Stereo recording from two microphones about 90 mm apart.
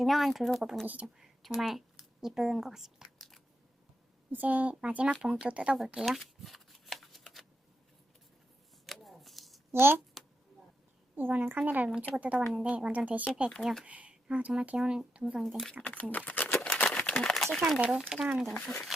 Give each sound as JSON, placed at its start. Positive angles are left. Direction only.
{"t": 0.0, "sound": "speech", "side_deg": 0}
{"t": 0.9, "sound": "speech", "side_deg": -15}
{"t": 1.5, "sound": "speech", "side_deg": 0}
{"t": 4.3, "sound": "speech", "side_deg": -15}
{"t": 5.7, "sound": "shuffling cards", "side_deg": -5}
{"t": 8.9, "sound": "a sound", "side_deg": 0}
{"t": 9.7, "sound": "a woman's voice", "side_deg": -25}
{"t": 11.1, "sound": "a woman's voice", "side_deg": -20}
{"t": 13.6, "sound": "speech", "side_deg": 0}
{"t": 13.8, "sound": "speech", "side_deg": -15}
{"t": 15.8, "sound": "speech", "side_deg": 15}
{"t": 16.1, "sound": "a sound", "side_deg": 15}
{"t": 16.7, "sound": "crumpling", "side_deg": 15}
{"t": 17.7, "sound": "speech", "side_deg": -10}